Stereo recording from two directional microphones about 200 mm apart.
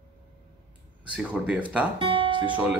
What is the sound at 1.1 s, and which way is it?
Speech, 5° right (ahead or behind).